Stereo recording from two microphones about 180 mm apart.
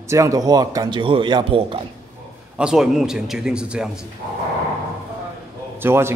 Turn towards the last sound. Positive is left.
turn(degrees=-15)  # may be behind; listen again after turning